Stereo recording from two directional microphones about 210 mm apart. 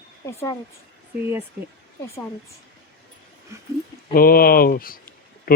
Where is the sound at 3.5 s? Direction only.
15° right (ahead or behind).